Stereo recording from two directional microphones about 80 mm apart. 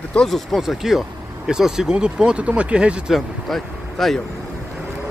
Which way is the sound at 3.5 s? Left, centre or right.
Centre.